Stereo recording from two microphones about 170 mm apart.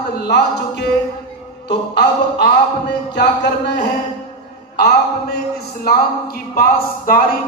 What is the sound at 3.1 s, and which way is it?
Speech, 85° left.